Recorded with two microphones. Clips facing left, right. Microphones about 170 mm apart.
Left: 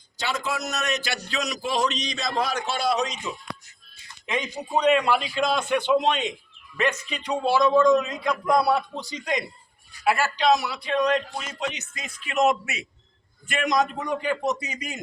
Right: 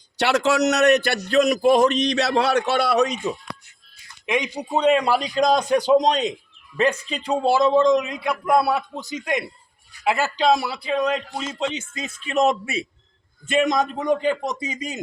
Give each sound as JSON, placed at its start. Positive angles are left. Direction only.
{"t": 0.2, "sound": "a man's voice", "side_deg": -75}
{"t": 4.3, "sound": "speech", "side_deg": -15}
{"t": 4.8, "sound": "a man's voice", "side_deg": -35}
{"t": 7.9, "sound": "a man's voice", "side_deg": -15}
{"t": 10.0, "sound": "a man's voice", "side_deg": -20}
{"t": 10.3, "sound": "a man's voice", "side_deg": -30}